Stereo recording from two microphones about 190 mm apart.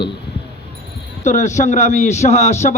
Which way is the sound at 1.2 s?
40° left (ahead or behind).